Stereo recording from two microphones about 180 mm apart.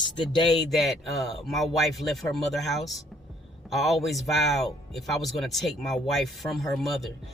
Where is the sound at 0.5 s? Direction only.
Centre (ahead or behind).